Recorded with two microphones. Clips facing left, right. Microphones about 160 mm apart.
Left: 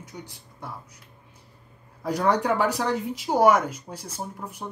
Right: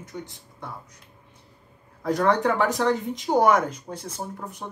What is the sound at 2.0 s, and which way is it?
Speech, 10° left (ahead or behind).